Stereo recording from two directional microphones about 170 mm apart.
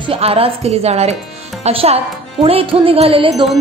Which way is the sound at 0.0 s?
35° right (ahead or behind).